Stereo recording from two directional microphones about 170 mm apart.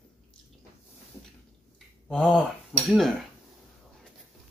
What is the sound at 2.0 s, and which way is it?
Speech, 5° left (ahead or behind).